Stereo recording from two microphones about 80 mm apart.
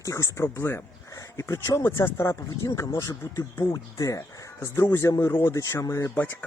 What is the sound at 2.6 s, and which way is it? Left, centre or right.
Speech, left.